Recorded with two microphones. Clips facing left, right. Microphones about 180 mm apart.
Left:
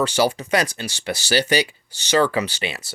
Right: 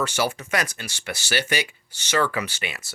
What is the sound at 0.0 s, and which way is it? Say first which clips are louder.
Speech: left 5 dB; 30° left (ahead or behind).